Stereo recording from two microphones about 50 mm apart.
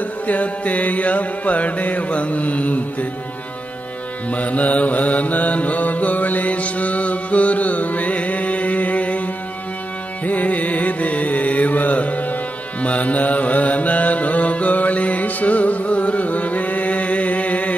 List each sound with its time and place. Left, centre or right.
0.3 s mantra: left
4.3 s mantra: left
10.2 s music: left
12.8 s mantra: left